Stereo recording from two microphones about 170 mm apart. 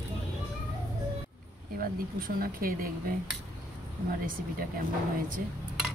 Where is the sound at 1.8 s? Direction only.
60° right (ahead or behind).